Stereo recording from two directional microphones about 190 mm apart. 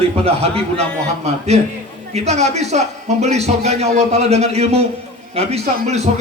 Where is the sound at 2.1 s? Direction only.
35° right (ahead or behind).